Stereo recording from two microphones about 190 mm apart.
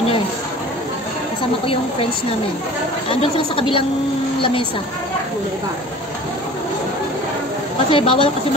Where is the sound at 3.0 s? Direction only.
25° left (ahead or behind).